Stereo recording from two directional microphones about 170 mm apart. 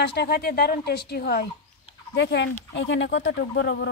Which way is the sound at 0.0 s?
70° left (ahead or behind).